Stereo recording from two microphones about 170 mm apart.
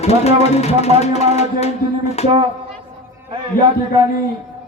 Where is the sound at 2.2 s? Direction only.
40° left (ahead or behind).